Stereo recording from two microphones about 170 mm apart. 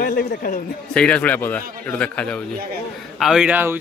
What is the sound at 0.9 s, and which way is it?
Speech, 5° left (ahead or behind).